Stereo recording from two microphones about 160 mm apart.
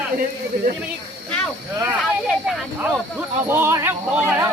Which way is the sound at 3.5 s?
15° right (ahead or behind).